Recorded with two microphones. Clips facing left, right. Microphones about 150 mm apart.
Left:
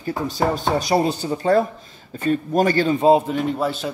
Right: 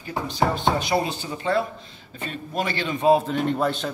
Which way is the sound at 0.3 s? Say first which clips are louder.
Left 1 dB; 40° left (ahead or behind).